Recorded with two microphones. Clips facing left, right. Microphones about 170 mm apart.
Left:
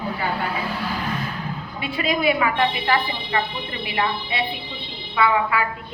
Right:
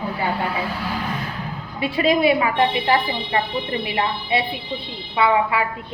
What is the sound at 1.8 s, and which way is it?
A woman's voice, 35° right (ahead or behind).